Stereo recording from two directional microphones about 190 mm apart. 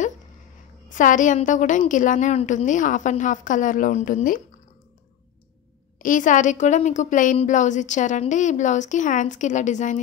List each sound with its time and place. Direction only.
0.8 s a woman's voice: 40° left (ahead or behind)
5.9 s a woman's voice: 45° left (ahead or behind)